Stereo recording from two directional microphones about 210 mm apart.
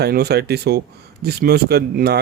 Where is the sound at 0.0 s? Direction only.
50° right (ahead or behind).